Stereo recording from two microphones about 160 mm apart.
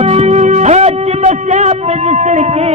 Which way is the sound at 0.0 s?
40° right (ahead or behind).